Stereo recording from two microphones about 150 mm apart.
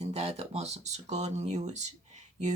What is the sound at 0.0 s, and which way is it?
Speech, 45° right (ahead or behind).